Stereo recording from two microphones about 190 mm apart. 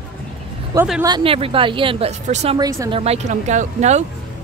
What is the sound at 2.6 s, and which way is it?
Speech, 20° right (ahead or behind).